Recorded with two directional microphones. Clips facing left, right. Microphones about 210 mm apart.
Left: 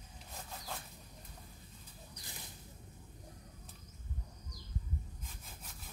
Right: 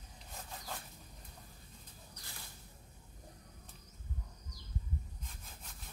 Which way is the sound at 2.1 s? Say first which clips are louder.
Left 2 dB; 20° left (ahead or behind).